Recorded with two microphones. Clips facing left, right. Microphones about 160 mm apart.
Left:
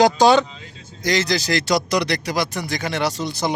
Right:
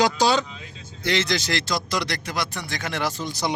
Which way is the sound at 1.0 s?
40° left (ahead or behind).